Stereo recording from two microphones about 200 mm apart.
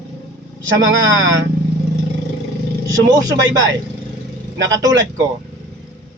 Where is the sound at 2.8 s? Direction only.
15° right (ahead or behind).